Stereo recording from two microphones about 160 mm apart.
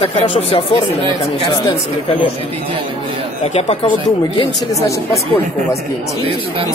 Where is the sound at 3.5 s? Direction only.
45° left (ahead or behind).